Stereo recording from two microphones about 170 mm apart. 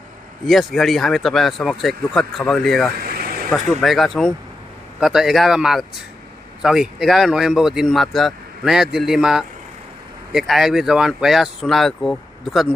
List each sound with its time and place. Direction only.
0.5 s speech: centre (ahead or behind)
3.0 s vehicle: 60° right (ahead or behind)
3.5 s speech: centre (ahead or behind)